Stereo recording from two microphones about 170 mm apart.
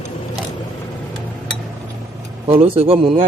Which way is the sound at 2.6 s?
35° right (ahead or behind).